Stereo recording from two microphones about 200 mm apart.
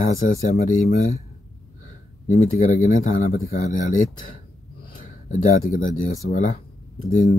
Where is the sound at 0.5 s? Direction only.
40° left (ahead or behind).